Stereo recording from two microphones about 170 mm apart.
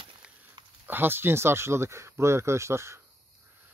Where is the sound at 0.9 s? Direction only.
10° right (ahead or behind).